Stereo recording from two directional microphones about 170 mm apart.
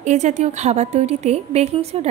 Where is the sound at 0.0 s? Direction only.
45° right (ahead or behind).